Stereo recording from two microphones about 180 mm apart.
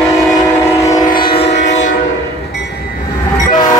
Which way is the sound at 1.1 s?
55° left (ahead or behind).